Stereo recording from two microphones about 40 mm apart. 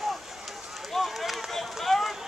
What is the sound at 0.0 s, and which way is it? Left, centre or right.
Run, centre.